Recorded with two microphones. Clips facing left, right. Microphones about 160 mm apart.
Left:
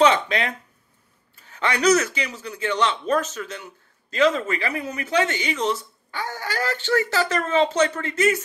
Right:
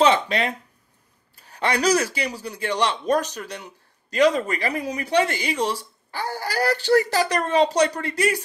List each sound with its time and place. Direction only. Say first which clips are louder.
0.0 s speech: even; 35° right (ahead or behind)